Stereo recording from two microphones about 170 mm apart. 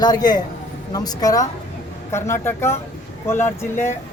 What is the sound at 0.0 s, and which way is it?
A woman's voice, 25° left (ahead or behind).